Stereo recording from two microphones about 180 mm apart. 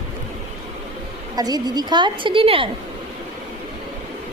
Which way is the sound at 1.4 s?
20° right (ahead or behind).